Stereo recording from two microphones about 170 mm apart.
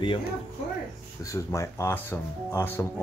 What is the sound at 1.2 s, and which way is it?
Speech, 15° left (ahead or behind).